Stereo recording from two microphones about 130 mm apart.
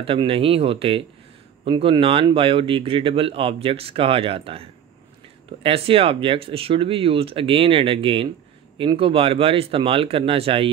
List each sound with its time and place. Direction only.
0.0 s speech: 45° right (ahead or behind)